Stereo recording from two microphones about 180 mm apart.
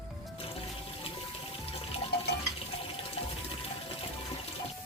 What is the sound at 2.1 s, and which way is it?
Water, 65° left (ahead or behind).